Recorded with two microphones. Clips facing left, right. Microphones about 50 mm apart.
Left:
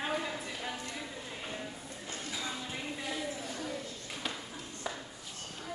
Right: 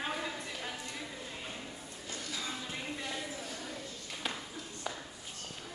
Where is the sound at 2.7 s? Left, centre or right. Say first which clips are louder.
Left 1 dB; centre.